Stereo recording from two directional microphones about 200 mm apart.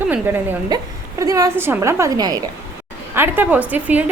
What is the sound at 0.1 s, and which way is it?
A woman's voice, 10° right (ahead or behind).